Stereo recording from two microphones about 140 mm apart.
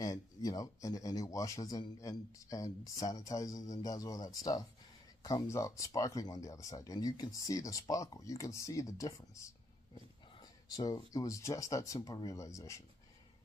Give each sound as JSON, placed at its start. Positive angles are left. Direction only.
{"t": 0.0, "sound": "speech", "side_deg": 25}
{"t": 10.7, "sound": "speech", "side_deg": 25}